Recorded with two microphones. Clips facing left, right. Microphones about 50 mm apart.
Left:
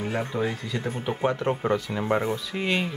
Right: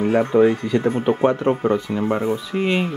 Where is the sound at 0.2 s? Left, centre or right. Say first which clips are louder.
Right 15 dB; right.